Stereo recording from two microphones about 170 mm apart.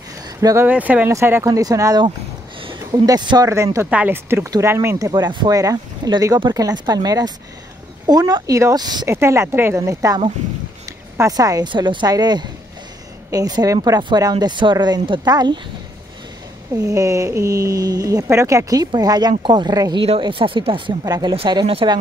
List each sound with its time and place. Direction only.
0.4 s speech: 20° right (ahead or behind)
0.7 s speech: 10° right (ahead or behind); by 15.6 s 25° right (ahead or behind)
16.7 s speech: 20° right (ahead or behind)